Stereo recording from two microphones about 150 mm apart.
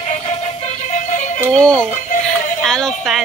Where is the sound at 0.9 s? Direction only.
50° left (ahead or behind).